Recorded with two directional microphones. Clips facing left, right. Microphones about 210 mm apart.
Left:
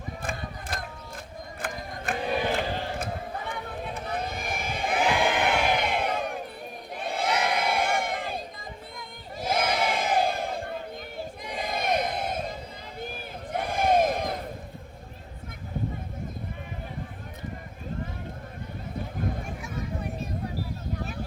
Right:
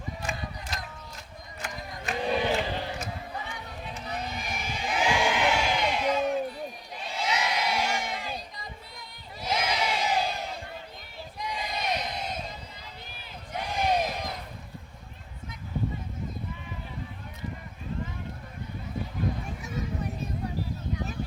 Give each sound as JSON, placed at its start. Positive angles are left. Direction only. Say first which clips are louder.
{"t": 0.2, "sound": "mechanisms", "louder": "left 1 dB", "side_deg": 55}
{"t": 1.6, "sound": "a sound", "louder": "left 3 dB", "side_deg": 50}
{"t": 6.9, "sound": "crowd", "louder": "left 4 dB", "side_deg": 55}